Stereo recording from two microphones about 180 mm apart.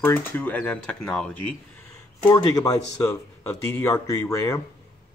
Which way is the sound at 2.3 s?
25° left (ahead or behind).